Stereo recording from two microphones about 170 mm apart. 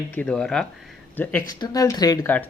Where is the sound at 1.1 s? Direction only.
10° left (ahead or behind).